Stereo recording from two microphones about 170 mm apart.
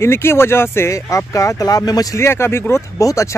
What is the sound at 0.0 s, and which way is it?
Speech, 15° left (ahead or behind).